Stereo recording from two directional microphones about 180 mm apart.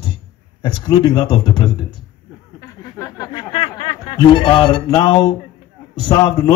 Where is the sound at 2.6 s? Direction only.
15° left (ahead or behind).